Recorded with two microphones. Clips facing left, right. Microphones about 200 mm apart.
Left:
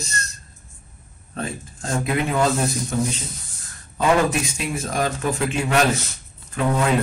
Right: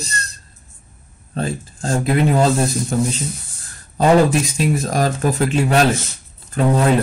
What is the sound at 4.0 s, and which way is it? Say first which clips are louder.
A man's voice: right 5 dB; 35° right (ahead or behind).